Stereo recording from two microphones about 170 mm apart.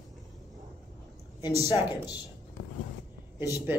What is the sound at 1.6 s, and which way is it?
Speech, 20° left (ahead or behind).